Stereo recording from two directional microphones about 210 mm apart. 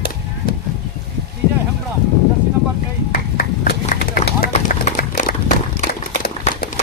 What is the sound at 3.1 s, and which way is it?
Run, 50° left (ahead or behind).